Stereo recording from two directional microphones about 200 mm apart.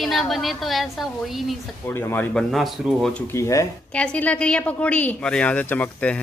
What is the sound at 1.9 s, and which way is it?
Speech, 10° left (ahead or behind).